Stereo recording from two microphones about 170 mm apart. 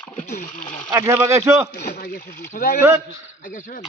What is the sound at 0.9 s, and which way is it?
Speech, 20° right (ahead or behind).